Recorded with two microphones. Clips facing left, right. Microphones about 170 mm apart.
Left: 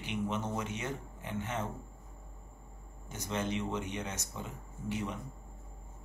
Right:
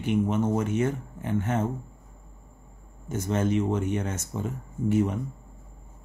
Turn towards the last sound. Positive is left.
turn(degrees=-50)  # may be behind; listen again after turning